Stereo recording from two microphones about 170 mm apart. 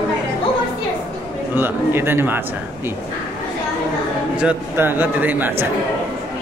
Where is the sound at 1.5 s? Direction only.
10° right (ahead or behind).